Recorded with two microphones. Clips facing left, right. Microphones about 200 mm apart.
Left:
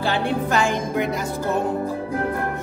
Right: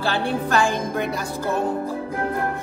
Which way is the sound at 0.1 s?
20° left (ahead or behind).